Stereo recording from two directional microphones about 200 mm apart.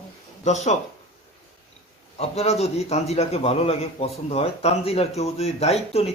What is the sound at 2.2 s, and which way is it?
A man's voice, 30° left (ahead or behind).